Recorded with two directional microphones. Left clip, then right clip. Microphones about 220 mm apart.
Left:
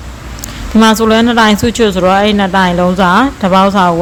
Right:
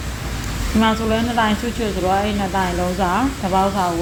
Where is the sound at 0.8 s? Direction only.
40° left (ahead or behind).